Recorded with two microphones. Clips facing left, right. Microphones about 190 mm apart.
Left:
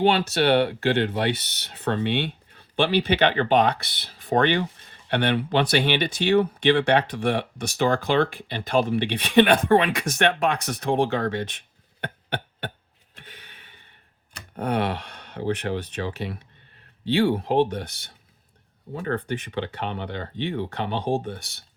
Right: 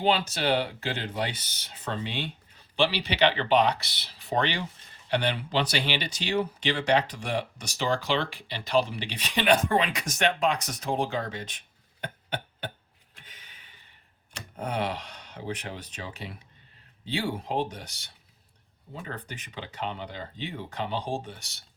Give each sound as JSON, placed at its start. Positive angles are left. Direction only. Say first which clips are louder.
{"t": 0.0, "sound": "speech", "louder": "left 6 dB", "side_deg": 65}
{"t": 13.1, "sound": "a sound", "louder": "left 7 dB", "side_deg": 60}
{"t": 14.5, "sound": "speech", "louder": "left 6 dB", "side_deg": 60}
{"t": 18.9, "sound": "speech", "louder": "left 11 dB", "side_deg": 60}